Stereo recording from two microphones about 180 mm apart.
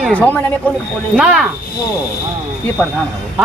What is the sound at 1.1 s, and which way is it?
Speech, 5° right (ahead or behind).